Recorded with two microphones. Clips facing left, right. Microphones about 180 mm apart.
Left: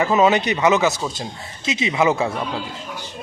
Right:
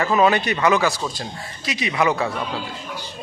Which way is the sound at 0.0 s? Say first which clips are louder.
Left 1 dB; 20° left (ahead or behind).